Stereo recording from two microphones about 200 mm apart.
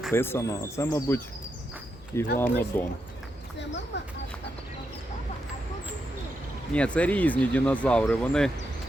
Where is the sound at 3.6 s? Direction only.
65° left (ahead or behind).